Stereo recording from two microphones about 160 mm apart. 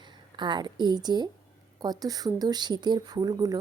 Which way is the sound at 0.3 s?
30° right (ahead or behind).